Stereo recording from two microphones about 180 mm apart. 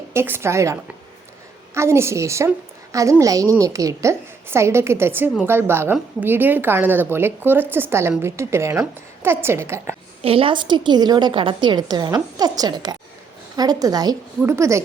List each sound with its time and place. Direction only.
0.1 s a woman's voice: 15° right (ahead or behind)
10.2 s a woman's voice: 30° right (ahead or behind); by 14.8 s 15° right (ahead or behind)